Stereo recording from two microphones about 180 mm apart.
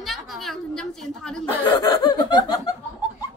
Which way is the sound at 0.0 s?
Centre (ahead or behind).